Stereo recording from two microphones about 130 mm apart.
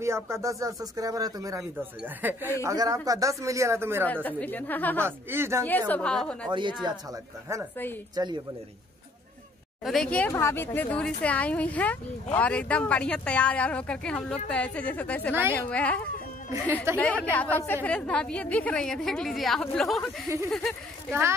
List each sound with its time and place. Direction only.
0.0 s speech: 20° right (ahead or behind)
4.0 s speech: 15° left (ahead or behind)
5.0 s speech: 20° right (ahead or behind)
5.7 s speech: 15° left (ahead or behind)
8.2 s speech: 30° right (ahead or behind)
9.8 s speech: 5° left (ahead or behind)
17.0 s a woman's voice: 10° left (ahead or behind)
21.1 s speech: 20° right (ahead or behind)